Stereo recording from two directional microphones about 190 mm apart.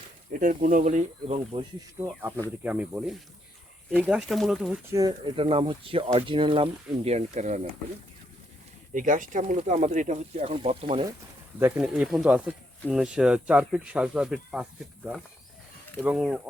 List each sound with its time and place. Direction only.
0.3 s speech: 45° right (ahead or behind)
2.6 s speech: 5° right (ahead or behind)
4.9 s speech: 20° right (ahead or behind); by 7.7 s 40° right (ahead or behind)
8.9 s speech: 45° right (ahead or behind)
11.6 s speech: 5° right (ahead or behind)